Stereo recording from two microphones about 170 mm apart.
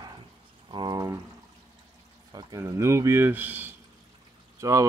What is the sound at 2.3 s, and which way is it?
Speech, 20° right (ahead or behind).